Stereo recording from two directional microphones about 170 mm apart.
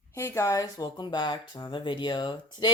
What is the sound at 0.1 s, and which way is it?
Speech, 15° left (ahead or behind).